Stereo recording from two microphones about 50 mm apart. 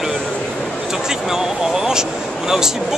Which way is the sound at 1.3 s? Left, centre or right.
Centre.